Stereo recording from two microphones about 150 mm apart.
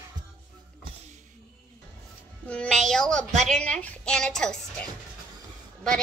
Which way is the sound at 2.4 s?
5° left (ahead or behind).